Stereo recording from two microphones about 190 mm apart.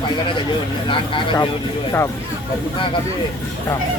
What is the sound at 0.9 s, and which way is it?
Speech, 25° left (ahead or behind).